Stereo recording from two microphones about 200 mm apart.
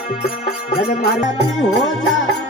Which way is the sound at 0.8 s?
40° left (ahead or behind).